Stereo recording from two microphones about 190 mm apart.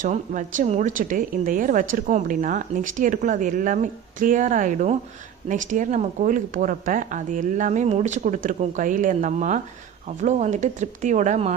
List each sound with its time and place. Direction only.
0.0 s speech: 40° right (ahead or behind)